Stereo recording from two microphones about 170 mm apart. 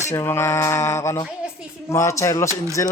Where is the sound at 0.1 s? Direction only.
15° left (ahead or behind).